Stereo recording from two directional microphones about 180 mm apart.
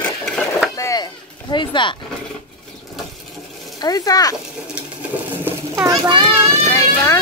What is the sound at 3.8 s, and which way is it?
Speech, 20° left (ahead or behind).